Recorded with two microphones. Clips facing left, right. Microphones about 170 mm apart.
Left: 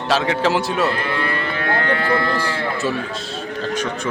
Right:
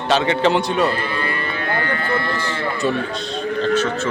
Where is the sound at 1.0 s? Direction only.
70° left (ahead or behind).